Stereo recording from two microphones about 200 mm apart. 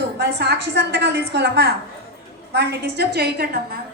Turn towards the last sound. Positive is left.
turn(degrees=-55)  # may be behind; listen again after turning